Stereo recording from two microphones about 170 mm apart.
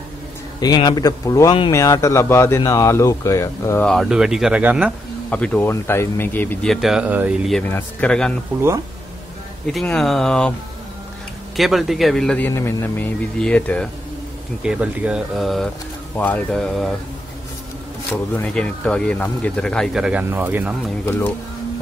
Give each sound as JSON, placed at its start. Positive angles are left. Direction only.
{"t": 0.6, "sound": "a man's voice", "side_deg": 25}
{"t": 3.8, "sound": "speech", "side_deg": 0}
{"t": 5.3, "sound": "speech", "side_deg": 10}
{"t": 7.6, "sound": "speech", "side_deg": 10}
{"t": 9.7, "sound": "speech", "side_deg": 0}
{"t": 11.5, "sound": "speech", "side_deg": 0}
{"t": 14.6, "sound": "speech", "side_deg": -5}
{"t": 18.1, "sound": "speech", "side_deg": 10}
{"t": 21.0, "sound": "speech", "side_deg": 10}